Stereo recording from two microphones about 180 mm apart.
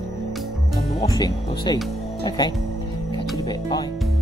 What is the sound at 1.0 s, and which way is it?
Speech, 20° left (ahead or behind).